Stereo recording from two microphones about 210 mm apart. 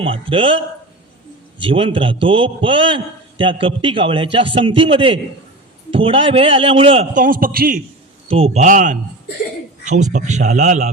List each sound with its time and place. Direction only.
0.0 s a man's voice: 25° right (ahead or behind); by 7.8 s 45° right (ahead or behind)
8.3 s a man's voice: 30° right (ahead or behind)